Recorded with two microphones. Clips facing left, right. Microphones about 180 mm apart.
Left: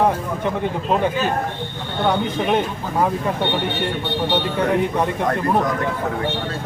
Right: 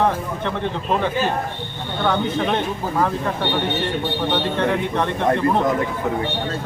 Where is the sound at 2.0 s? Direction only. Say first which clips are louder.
Left 1 dB; 10° left (ahead or behind).